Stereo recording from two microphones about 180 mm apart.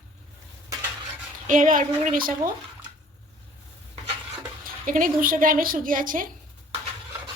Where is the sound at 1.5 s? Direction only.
45° right (ahead or behind).